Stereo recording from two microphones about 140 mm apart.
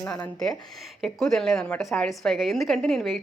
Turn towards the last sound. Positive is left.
turn(degrees=0)  # may be behind; listen again after turning